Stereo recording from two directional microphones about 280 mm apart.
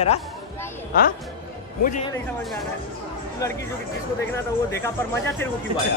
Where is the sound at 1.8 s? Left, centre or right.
Left.